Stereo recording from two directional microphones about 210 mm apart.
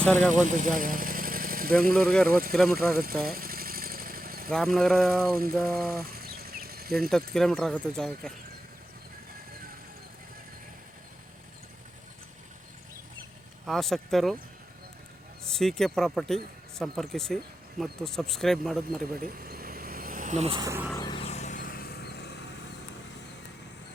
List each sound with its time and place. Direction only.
0.0 s speech: 5° left (ahead or behind)
0.4 s vehicle: 40° right (ahead or behind)
2.2 s speech: 45° right (ahead or behind)
2.9 s vehicle: 45° right (ahead or behind)
4.5 s speech: centre (ahead or behind)
5.8 s a sound: 45° right (ahead or behind)
7.1 s speech: centre (ahead or behind)
13.7 s speech: centre (ahead or behind)
15.4 s speech: centre (ahead or behind)
19.1 s vehicle: 45° right (ahead or behind); by 20.9 s 10° right (ahead or behind)
20.9 s vehicle: 20° left (ahead or behind); by 22.4 s 50° left (ahead or behind)